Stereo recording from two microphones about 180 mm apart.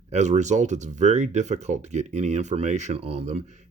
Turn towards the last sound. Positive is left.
turn(degrees=-40)  # may be behind; listen again after turning